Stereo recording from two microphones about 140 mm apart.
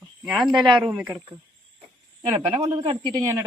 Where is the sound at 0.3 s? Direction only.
Centre (ahead or behind).